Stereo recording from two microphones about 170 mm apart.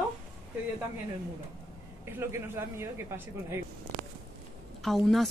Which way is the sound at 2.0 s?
15° right (ahead or behind).